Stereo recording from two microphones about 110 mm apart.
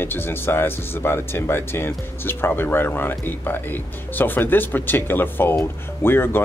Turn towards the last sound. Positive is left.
turn(degrees=20)  # may be behind; listen again after turning